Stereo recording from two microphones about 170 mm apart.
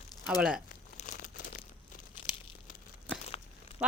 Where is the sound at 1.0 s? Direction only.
45° left (ahead or behind).